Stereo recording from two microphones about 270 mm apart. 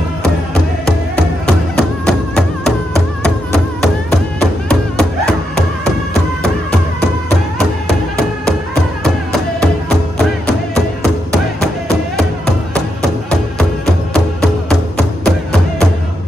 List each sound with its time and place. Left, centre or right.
0.8 s music: centre
9.6 s music: centre
14.1 s music: centre